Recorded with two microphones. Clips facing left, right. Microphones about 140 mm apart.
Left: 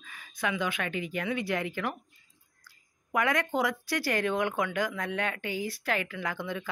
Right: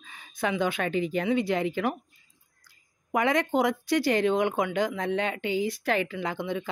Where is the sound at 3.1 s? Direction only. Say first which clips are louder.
Right 3 dB; 25° right (ahead or behind).